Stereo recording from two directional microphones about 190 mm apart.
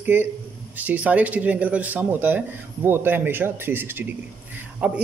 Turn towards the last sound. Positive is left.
turn(degrees=-5)  # may be behind; listen again after turning